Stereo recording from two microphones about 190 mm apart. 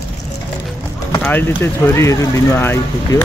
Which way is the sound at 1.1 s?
10° left (ahead or behind).